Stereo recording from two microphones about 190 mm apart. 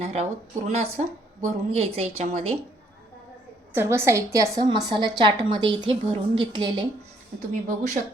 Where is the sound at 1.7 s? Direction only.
30° right (ahead or behind).